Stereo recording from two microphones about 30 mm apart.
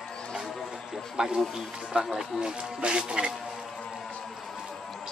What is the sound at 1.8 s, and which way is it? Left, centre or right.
Speech, centre.